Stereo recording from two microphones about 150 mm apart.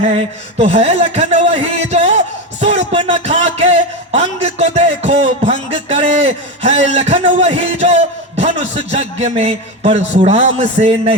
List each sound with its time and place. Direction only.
0.0 s a man's voice: 40° right (ahead or behind)
1.9 s music: 50° right (ahead or behind)
5.7 s a sound: 50° right (ahead or behind)
8.9 s a man's voice: 50° right (ahead or behind)